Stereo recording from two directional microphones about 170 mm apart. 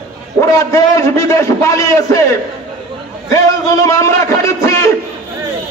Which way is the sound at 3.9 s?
20° left (ahead or behind).